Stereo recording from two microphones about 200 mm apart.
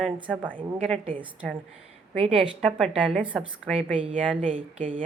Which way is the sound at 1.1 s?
25° right (ahead or behind).